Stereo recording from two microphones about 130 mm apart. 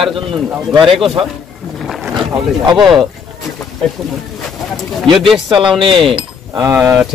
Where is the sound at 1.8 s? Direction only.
Centre (ahead or behind).